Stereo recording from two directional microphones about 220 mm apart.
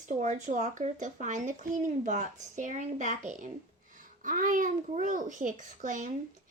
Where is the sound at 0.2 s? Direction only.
30° right (ahead or behind).